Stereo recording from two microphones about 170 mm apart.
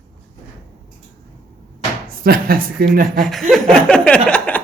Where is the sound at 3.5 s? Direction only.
5° left (ahead or behind).